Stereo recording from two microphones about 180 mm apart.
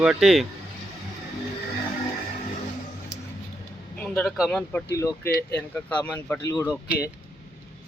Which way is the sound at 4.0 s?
5° left (ahead or behind).